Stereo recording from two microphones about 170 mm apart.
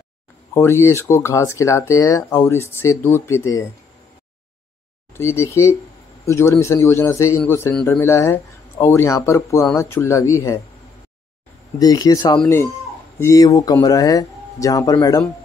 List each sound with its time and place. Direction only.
0.6 s speech: 15° left (ahead or behind)
5.1 s speech: 15° left (ahead or behind)
11.8 s speech: 20° left (ahead or behind)